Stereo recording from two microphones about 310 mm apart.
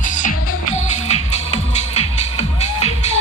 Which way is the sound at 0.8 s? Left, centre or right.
Left.